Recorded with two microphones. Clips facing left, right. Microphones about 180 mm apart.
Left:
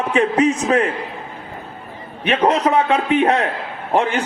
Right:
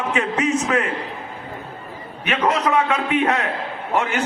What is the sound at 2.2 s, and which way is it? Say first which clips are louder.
A man's voice: left 4 dB; 30° left (ahead or behind).